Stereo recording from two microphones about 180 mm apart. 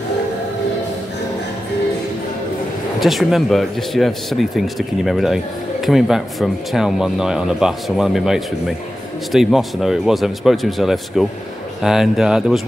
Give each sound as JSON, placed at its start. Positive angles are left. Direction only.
{"t": 3.0, "sound": "speech", "side_deg": 0}